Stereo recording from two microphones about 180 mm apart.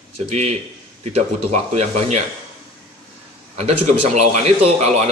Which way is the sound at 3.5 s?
35° right (ahead or behind).